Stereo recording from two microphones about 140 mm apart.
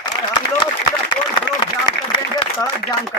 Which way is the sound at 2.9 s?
25° left (ahead or behind).